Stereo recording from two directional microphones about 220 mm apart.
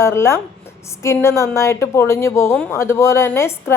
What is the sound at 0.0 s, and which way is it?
A woman's voice, 10° left (ahead or behind).